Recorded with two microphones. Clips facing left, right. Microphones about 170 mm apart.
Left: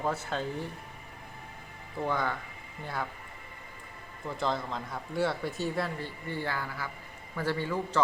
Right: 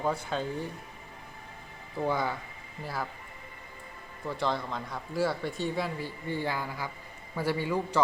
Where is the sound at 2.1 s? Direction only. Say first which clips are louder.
Right 1 dB; 10° right (ahead or behind).